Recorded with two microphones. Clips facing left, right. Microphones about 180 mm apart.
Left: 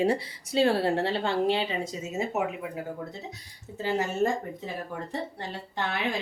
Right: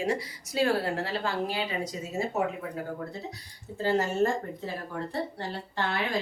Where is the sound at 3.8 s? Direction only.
15° left (ahead or behind).